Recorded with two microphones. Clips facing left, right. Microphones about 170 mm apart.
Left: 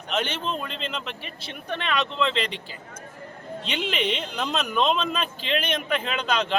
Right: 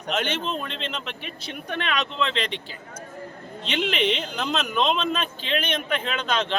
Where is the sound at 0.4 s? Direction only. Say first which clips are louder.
Even; 5° left (ahead or behind).